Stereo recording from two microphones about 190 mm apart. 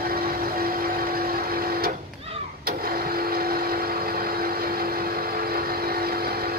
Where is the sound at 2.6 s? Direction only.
50° right (ahead or behind).